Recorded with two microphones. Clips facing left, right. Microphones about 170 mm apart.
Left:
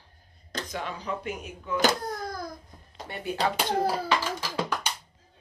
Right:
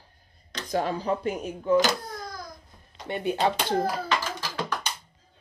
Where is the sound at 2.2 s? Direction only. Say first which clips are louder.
Left 4 dB; 55° left (ahead or behind).